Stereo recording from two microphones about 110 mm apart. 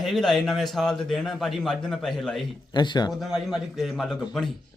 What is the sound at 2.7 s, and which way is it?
Speech, 40° left (ahead or behind).